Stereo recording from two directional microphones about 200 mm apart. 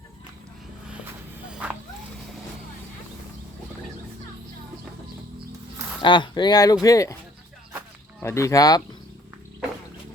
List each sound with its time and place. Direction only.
1.5 s dog: 5° right (ahead or behind)
6.0 s speech: 25° left (ahead or behind)
8.2 s speech: 15° left (ahead or behind)